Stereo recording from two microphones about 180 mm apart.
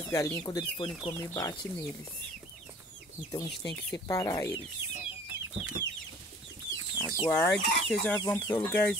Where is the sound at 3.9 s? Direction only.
20° left (ahead or behind).